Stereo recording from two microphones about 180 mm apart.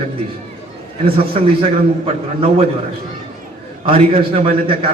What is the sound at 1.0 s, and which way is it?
Speech, 30° right (ahead or behind).